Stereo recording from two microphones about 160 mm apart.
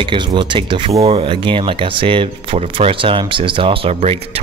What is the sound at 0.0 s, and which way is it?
Speech, 30° right (ahead or behind).